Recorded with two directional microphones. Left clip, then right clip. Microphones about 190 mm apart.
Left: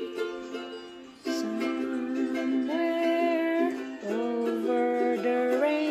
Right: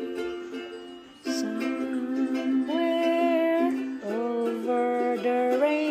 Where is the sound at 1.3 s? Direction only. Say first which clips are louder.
Right 1 dB; 15° right (ahead or behind).